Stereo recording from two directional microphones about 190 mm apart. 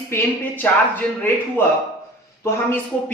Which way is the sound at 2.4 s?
10° left (ahead or behind).